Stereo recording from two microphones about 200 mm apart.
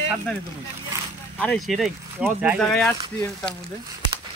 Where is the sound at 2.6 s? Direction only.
5° left (ahead or behind).